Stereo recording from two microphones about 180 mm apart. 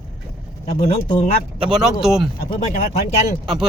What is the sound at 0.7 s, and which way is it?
Speech, 30° left (ahead or behind).